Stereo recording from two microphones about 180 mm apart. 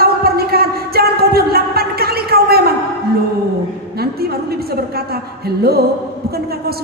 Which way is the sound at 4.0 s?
60° right (ahead or behind).